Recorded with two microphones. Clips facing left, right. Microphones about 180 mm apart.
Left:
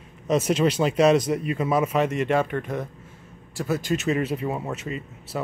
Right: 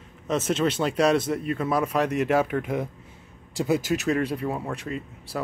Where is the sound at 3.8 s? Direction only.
Centre (ahead or behind).